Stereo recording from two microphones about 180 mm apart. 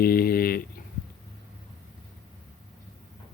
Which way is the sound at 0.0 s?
55° left (ahead or behind).